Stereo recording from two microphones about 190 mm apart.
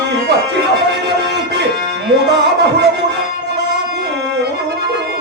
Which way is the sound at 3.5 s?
65° right (ahead or behind).